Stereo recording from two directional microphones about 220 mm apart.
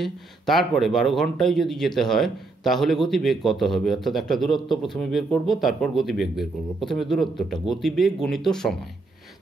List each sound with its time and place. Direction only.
0.0 s a man's voice: centre (ahead or behind)